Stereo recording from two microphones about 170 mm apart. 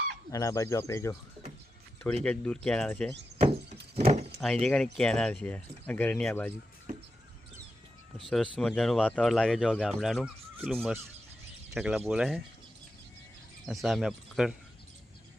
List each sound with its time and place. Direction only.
0.3 s speech: 20° left (ahead or behind)
2.2 s speech: 5° left (ahead or behind)
3.9 s vehicle: 40° right (ahead or behind)
4.4 s speech: 5° left (ahead or behind)
8.2 s speech: 5° left (ahead or behind)
13.7 s speech: centre (ahead or behind)